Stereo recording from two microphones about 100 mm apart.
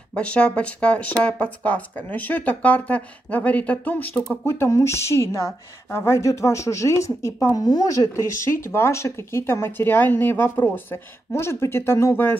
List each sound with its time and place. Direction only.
0.1 s speech: 10° left (ahead or behind)
4.5 s speech: 30° left (ahead or behind)
8.5 s speech: 25° left (ahead or behind)